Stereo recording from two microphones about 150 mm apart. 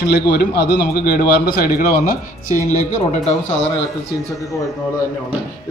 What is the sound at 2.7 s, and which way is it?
Speech, 50° left (ahead or behind).